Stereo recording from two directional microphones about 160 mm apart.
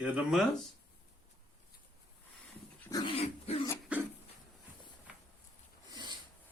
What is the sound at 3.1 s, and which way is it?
Dog, 40° left (ahead or behind).